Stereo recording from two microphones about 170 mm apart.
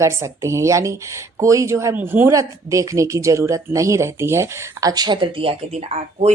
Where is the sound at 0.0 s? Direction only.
15° right (ahead or behind).